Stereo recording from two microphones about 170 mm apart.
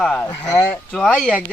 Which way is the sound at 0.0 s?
10° left (ahead or behind).